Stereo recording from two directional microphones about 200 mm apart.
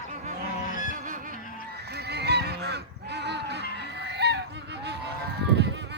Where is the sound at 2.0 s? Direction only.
55° right (ahead or behind).